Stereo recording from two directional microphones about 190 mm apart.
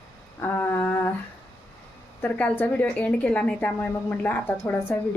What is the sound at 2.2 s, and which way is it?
A woman's voice, 10° left (ahead or behind).